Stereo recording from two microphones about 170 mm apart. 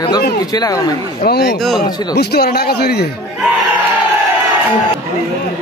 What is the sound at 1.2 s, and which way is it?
A man's voice, 65° left (ahead or behind).